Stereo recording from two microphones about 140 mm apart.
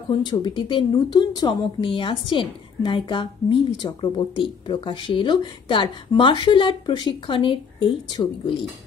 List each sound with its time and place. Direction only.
0.3 s a woman's voice: 35° left (ahead or behind)